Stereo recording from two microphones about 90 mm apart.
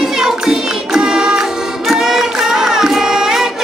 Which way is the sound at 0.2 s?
5° right (ahead or behind).